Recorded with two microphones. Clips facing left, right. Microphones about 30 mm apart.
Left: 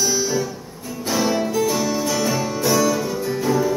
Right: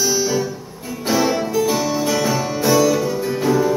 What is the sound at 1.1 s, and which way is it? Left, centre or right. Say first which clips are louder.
Music: right 2 dB; centre.